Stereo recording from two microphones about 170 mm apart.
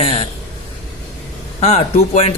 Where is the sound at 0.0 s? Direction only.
40° left (ahead or behind).